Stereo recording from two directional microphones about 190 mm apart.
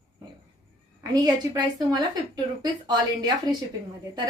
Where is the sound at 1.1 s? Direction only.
20° right (ahead or behind).